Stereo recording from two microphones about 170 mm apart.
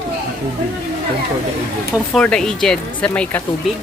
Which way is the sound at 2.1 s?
5° left (ahead or behind).